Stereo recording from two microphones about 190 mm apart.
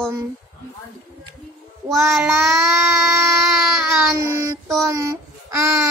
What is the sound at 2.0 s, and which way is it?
Child singing, 5° right (ahead or behind).